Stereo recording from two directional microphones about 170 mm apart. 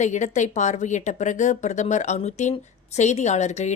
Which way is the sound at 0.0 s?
45° left (ahead or behind).